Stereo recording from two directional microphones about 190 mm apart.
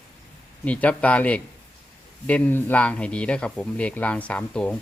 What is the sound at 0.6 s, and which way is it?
Speech, 10° left (ahead or behind).